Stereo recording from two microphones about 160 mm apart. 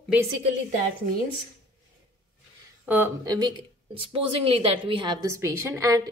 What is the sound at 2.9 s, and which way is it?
Speech, 10° right (ahead or behind).